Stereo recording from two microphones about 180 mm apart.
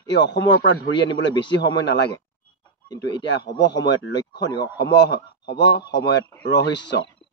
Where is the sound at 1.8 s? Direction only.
70° left (ahead or behind).